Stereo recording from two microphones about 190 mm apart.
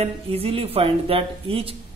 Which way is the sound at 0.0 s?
30° right (ahead or behind).